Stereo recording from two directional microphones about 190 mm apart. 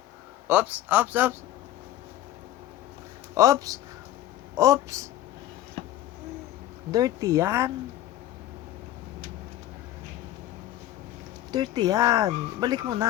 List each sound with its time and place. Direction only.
0.4 s speech: 10° right (ahead or behind)
3.3 s speech: 15° right (ahead or behind)
6.9 s speech: 20° right (ahead or behind)
11.5 s speech: 20° right (ahead or behind)